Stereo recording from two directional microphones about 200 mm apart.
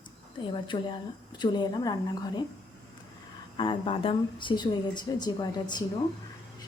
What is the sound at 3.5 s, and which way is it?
A woman's voice, 25° left (ahead or behind).